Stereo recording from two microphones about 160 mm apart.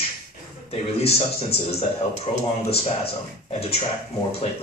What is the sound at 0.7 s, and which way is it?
Speech, 40° left (ahead or behind).